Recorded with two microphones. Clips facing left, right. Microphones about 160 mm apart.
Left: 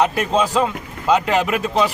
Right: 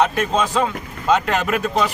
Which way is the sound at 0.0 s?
5° left (ahead or behind).